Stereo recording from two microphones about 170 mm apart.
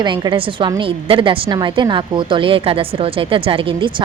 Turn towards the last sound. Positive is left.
turn(degrees=-30)  # may be behind; listen again after turning